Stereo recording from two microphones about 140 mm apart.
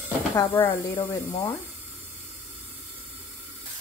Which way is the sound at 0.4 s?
20° left (ahead or behind).